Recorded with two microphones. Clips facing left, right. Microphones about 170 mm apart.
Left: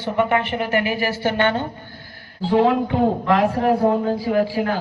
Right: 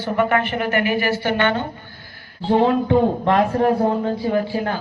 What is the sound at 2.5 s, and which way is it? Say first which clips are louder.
Speech: even; 75° left (ahead or behind).